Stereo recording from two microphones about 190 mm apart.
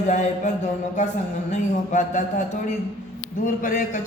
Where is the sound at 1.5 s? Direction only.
40° left (ahead or behind).